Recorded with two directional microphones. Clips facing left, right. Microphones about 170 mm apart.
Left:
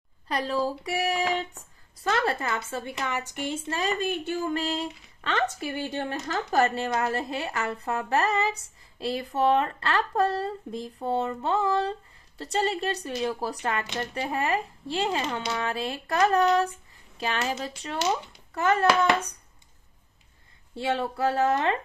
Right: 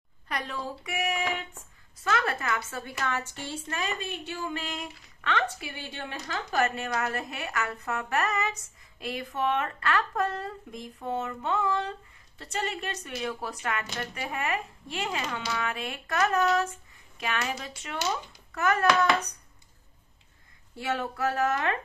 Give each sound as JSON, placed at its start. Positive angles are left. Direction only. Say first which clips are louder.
{"t": 0.3, "sound": "a woman's voice", "louder": "left 7 dB", "side_deg": 30}
{"t": 3.8, "sound": "a woman's voice", "louder": "left 9 dB", "side_deg": 45}
{"t": 20.7, "sound": "speech", "louder": "left 4 dB", "side_deg": 30}